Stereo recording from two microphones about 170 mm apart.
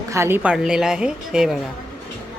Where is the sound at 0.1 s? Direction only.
15° right (ahead or behind).